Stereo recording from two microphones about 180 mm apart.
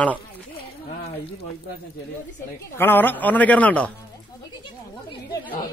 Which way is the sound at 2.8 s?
10° left (ahead or behind).